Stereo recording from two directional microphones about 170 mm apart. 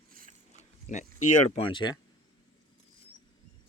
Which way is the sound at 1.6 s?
30° left (ahead or behind).